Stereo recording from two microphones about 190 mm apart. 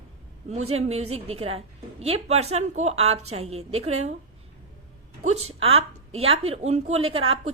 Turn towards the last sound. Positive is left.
turn(degrees=-30)  # may be behind; listen again after turning